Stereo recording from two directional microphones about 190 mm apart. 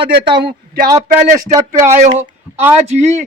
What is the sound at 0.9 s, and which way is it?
Speech, 20° right (ahead or behind).